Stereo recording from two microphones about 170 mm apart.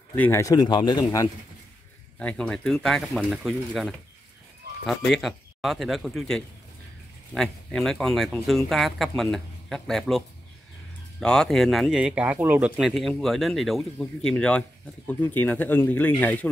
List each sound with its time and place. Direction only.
0.1 s speech: 10° left (ahead or behind)
2.1 s speech: 5° left (ahead or behind)